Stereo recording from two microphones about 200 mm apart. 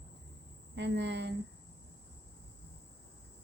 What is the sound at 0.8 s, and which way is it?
Speech, 60° right (ahead or behind).